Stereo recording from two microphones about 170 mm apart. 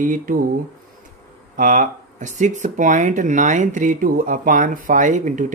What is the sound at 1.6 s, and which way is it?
Speech, 50° right (ahead or behind).